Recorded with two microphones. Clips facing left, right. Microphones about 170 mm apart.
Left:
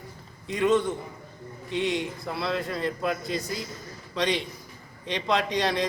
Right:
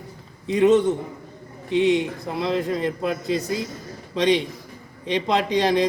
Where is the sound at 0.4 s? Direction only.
20° right (ahead or behind).